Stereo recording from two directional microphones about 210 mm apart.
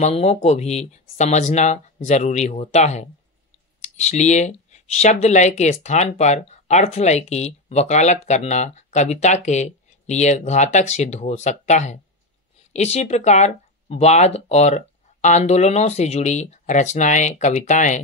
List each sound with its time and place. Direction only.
0.0 s speech: 30° left (ahead or behind)